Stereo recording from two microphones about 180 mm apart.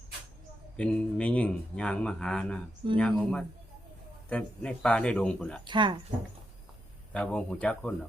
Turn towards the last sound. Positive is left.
turn(degrees=5)  # may be behind; listen again after turning